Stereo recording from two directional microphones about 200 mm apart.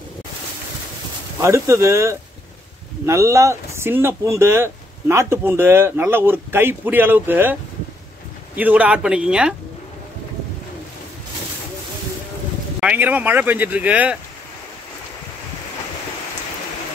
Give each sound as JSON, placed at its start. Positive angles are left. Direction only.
{"t": 1.4, "sound": "speech", "side_deg": -15}
{"t": 8.5, "sound": "a man's voice", "side_deg": -10}
{"t": 12.8, "sound": "speech", "side_deg": -10}